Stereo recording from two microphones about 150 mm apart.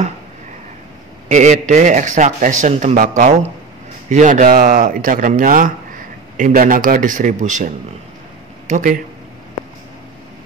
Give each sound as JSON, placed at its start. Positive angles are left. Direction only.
{"t": 1.3, "sound": "speech", "side_deg": -50}